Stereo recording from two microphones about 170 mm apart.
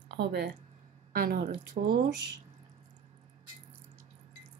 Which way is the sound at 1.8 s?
50° right (ahead or behind).